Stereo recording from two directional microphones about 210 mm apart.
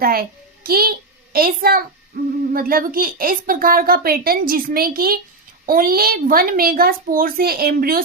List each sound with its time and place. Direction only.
0.0 s a child's voice: 45° right (ahead or behind)